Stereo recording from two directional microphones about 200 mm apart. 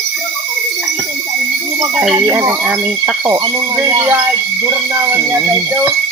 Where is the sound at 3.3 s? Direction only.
15° right (ahead or behind).